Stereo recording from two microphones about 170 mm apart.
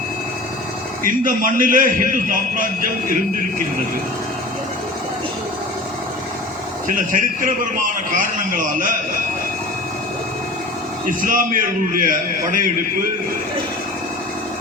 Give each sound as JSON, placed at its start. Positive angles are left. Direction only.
{"t": 1.0, "sound": "a man's voice", "side_deg": -50}
{"t": 6.8, "sound": "a man's voice", "side_deg": -50}
{"t": 11.0, "sound": "a man's voice", "side_deg": -50}